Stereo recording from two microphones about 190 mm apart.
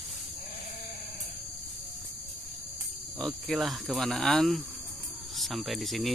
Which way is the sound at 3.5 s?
Centre (ahead or behind).